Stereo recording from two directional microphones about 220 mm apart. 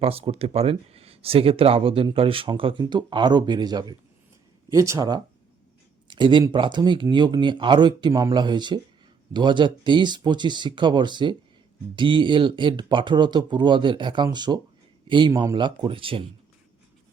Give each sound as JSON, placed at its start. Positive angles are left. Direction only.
{"t": 0.0, "sound": "speech", "side_deg": -25}